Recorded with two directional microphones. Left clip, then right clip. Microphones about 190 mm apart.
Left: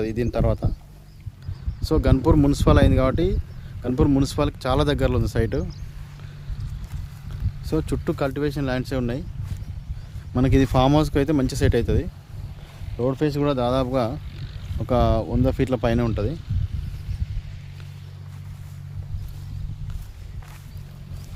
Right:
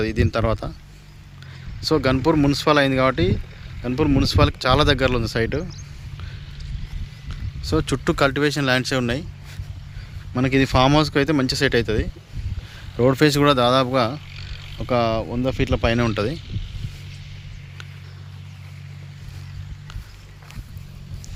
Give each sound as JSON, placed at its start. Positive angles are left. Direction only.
{"t": 0.0, "sound": "speech", "side_deg": 5}
{"t": 1.8, "sound": "speech", "side_deg": 5}
{"t": 3.8, "sound": "speech", "side_deg": 15}
{"t": 7.6, "sound": "speech", "side_deg": 0}
{"t": 10.3, "sound": "speech", "side_deg": 15}
{"t": 13.0, "sound": "speech", "side_deg": -25}
{"t": 14.1, "sound": "vehicle", "side_deg": -15}
{"t": 14.8, "sound": "speech", "side_deg": 15}
{"t": 16.0, "sound": "speech", "side_deg": 0}